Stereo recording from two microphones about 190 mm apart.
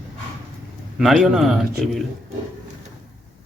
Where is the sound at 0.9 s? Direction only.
Centre (ahead or behind).